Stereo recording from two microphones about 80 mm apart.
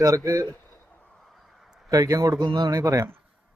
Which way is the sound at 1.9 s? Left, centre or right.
Right.